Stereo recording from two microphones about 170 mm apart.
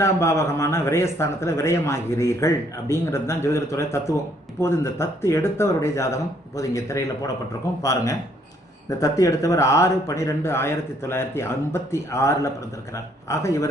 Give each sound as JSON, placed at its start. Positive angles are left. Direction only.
{"t": 0.0, "sound": "a man's voice", "side_deg": 15}